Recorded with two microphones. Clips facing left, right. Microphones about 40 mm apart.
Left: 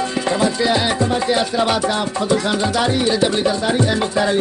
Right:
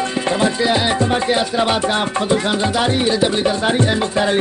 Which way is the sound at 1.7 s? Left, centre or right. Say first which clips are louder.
Right 1 dB; right.